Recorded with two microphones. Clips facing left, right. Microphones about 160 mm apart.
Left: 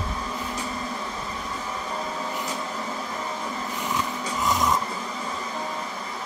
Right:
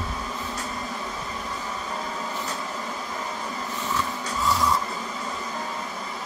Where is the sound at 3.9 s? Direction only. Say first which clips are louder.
Even; 20° left (ahead or behind).